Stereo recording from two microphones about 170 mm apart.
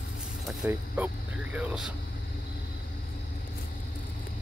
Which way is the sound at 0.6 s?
10° right (ahead or behind).